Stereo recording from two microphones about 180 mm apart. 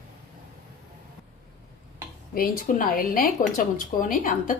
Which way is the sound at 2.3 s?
50° left (ahead or behind).